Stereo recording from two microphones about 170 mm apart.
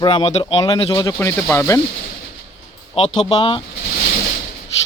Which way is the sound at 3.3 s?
30° left (ahead or behind).